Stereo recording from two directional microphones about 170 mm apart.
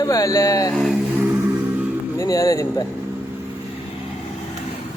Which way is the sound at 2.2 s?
20° left (ahead or behind).